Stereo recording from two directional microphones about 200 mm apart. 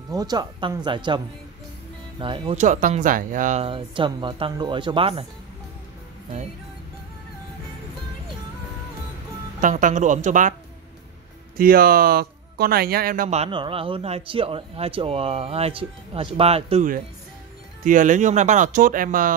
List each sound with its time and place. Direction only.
0.1 s speech: 20° right (ahead or behind)
9.6 s speech: 40° right (ahead or behind)
11.5 s speech: 45° right (ahead or behind)